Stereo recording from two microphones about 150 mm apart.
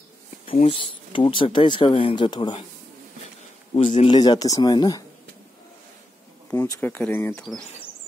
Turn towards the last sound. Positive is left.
turn(degrees=15)  # may be behind; listen again after turning